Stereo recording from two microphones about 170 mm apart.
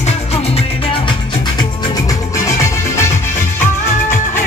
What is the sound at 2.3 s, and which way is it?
Music, 20° left (ahead or behind).